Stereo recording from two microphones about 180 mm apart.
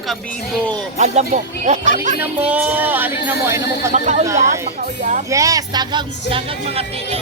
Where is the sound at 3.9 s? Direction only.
40° right (ahead or behind).